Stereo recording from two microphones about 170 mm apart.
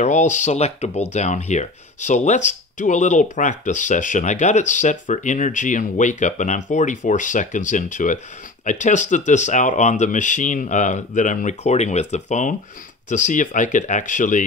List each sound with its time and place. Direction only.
0.0 s speech: 45° left (ahead or behind)